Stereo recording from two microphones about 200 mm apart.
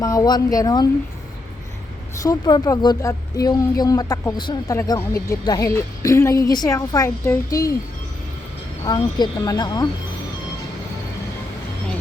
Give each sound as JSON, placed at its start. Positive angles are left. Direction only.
{"t": 0.0, "sound": "speech", "side_deg": 15}
{"t": 2.2, "sound": "speech", "side_deg": 20}
{"t": 8.8, "sound": "speech", "side_deg": 20}